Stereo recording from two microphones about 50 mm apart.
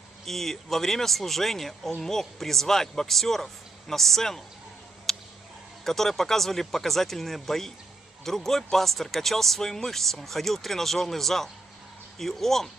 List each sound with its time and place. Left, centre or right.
0.2 s a man's voice: centre
5.1 s a sound: centre
5.9 s a man's voice: centre